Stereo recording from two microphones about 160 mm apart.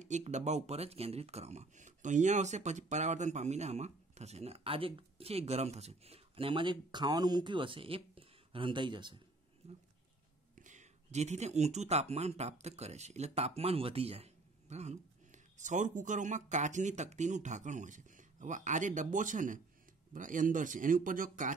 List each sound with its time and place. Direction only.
0.0 s speech: 45° right (ahead or behind); by 9.2 s 30° right (ahead or behind)
9.6 s speech: 40° right (ahead or behind)
10.5 s speech: 50° right (ahead or behind)